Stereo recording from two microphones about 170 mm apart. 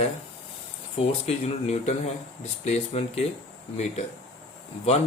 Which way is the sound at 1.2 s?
40° left (ahead or behind).